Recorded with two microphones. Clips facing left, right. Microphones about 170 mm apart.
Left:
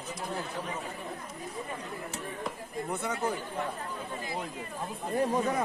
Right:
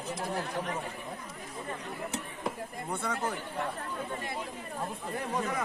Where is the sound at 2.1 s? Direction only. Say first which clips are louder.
Right 1 dB; 25° right (ahead or behind).